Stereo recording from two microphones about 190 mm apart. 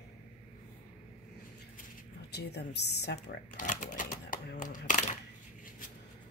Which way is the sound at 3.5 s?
45° left (ahead or behind).